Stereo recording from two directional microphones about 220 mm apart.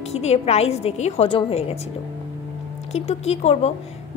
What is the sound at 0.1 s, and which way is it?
A woman's voice, 30° left (ahead or behind).